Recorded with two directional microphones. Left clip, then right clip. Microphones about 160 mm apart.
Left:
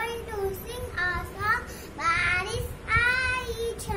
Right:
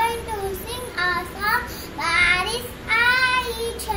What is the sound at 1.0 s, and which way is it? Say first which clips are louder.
Child singing: right 6 dB; 15° left (ahead or behind).